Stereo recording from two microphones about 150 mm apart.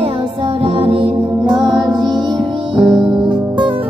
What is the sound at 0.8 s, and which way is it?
Music, 40° right (ahead or behind).